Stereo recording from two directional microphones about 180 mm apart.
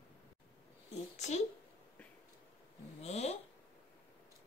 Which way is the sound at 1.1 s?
40° left (ahead or behind).